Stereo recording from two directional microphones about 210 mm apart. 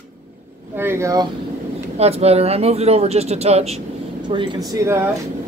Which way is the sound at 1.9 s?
30° right (ahead or behind).